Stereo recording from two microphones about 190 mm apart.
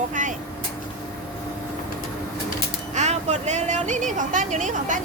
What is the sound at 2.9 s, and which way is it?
Speech, 35° right (ahead or behind).